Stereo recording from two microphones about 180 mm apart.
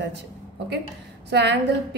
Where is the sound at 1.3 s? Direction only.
70° right (ahead or behind).